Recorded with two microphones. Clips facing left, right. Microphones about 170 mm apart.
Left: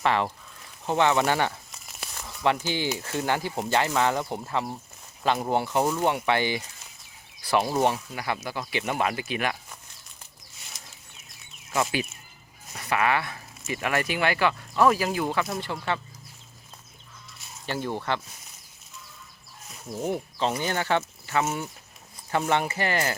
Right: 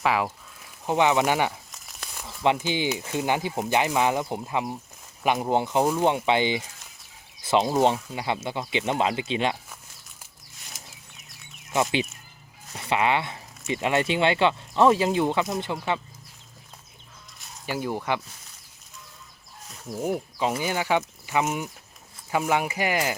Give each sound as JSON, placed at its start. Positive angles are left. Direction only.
{"t": 0.0, "sound": "speech", "side_deg": -5}
{"t": 1.7, "sound": "a sound", "side_deg": 0}
{"t": 2.1, "sound": "a sound", "side_deg": -15}
{"t": 2.6, "sound": "speech", "side_deg": -15}
{"t": 11.7, "sound": "speech", "side_deg": -20}
{"t": 17.7, "sound": "speech", "side_deg": -10}
{"t": 19.9, "sound": "speech", "side_deg": -5}